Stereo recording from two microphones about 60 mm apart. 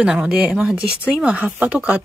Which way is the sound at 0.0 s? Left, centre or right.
Centre.